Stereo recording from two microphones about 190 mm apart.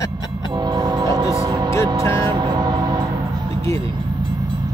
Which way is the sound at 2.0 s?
15° left (ahead or behind).